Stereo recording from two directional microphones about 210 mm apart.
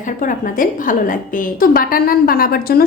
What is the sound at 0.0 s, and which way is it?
A woman's voice, 40° left (ahead or behind).